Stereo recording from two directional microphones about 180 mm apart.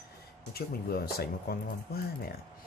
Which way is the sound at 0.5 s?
60° left (ahead or behind).